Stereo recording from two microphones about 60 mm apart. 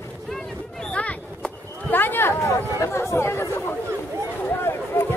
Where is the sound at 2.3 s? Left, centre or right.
Left.